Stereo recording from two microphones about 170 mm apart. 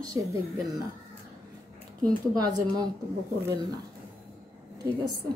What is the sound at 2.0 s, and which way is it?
Speech, 25° right (ahead or behind).